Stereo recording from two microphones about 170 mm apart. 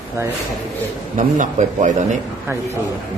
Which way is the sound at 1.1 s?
50° right (ahead or behind).